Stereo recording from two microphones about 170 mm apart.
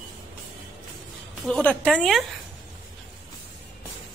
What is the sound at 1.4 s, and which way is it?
Speech, 5° left (ahead or behind).